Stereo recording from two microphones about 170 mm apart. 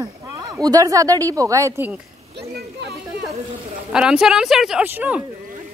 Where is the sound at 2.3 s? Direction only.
80° right.